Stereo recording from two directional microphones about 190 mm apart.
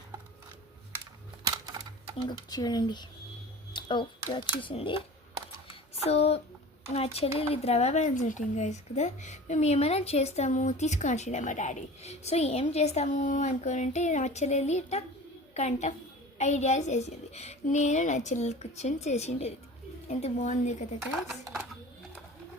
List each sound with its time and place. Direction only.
1.5 s typewriter: 20° right (ahead or behind)
2.1 s speech: 20° left (ahead or behind)
3.7 s a sound: 25° left (ahead or behind)
4.3 s speech: 25° left (ahead or behind)
6.1 s speech: 35° left (ahead or behind)